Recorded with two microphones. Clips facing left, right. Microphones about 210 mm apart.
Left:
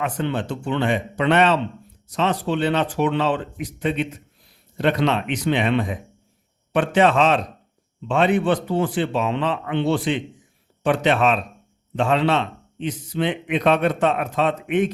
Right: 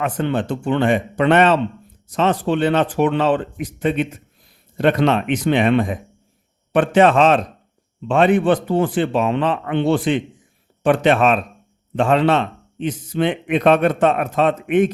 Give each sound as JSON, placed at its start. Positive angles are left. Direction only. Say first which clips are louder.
{"t": 0.0, "sound": "a man's voice", "louder": "right 4 dB", "side_deg": -50}